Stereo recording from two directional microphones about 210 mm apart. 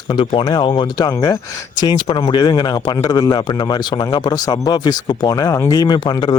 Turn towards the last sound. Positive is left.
turn(degrees=20)  # may be behind; listen again after turning